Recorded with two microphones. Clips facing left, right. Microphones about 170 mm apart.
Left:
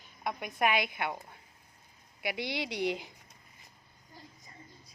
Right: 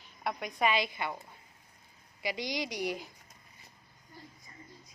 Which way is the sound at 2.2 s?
65° left (ahead or behind).